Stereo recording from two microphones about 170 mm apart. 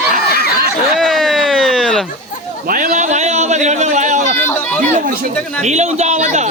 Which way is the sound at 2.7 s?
50° right (ahead or behind).